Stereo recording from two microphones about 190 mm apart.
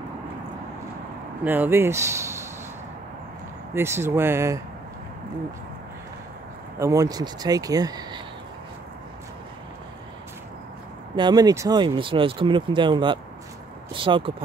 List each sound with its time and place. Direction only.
1.4 s speech: 10° right (ahead or behind)
3.7 s speech: 15° right (ahead or behind)
6.8 s speech: 15° right (ahead or behind)
11.1 s speech: 20° right (ahead or behind)